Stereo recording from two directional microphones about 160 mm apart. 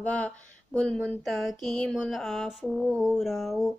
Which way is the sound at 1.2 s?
Centre (ahead or behind).